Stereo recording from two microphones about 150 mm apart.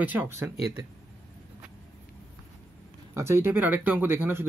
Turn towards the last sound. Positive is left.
turn(degrees=-15)  # may be behind; listen again after turning